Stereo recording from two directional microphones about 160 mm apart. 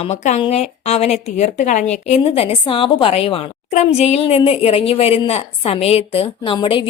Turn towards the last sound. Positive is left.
turn(degrees=30)  # may be behind; listen again after turning